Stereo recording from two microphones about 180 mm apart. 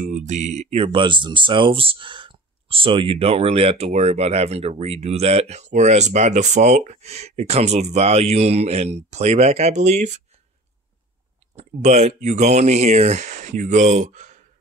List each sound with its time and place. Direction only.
0.0 s speech: 40° right (ahead or behind)
11.5 s speech: 35° right (ahead or behind)